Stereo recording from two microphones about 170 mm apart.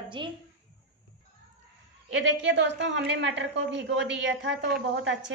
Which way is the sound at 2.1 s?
90° right.